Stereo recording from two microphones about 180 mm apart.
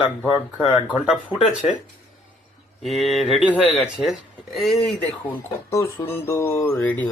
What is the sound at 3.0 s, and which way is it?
Speech, centre (ahead or behind).